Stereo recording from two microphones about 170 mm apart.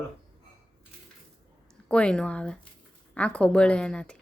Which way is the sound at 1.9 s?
5° left (ahead or behind).